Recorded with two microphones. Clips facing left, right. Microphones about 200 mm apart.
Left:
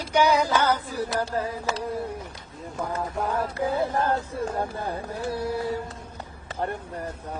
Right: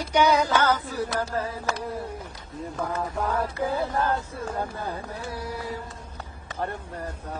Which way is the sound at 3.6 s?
30° left (ahead or behind).